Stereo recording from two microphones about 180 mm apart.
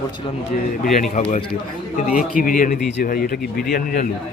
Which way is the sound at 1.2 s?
35° left (ahead or behind).